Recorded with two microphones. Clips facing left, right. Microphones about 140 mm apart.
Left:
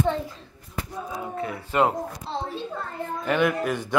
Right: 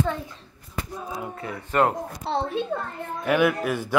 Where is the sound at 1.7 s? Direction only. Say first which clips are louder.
Even; 5° left (ahead or behind).